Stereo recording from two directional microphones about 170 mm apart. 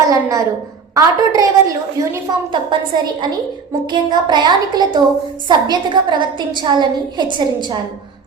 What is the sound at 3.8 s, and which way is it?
A woman's voice, 25° right (ahead or behind).